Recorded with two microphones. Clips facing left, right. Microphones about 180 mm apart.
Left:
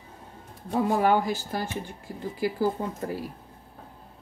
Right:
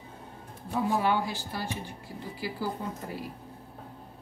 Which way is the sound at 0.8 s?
50° left (ahead or behind).